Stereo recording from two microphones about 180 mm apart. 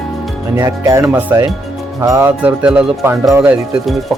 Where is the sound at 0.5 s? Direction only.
20° right (ahead or behind).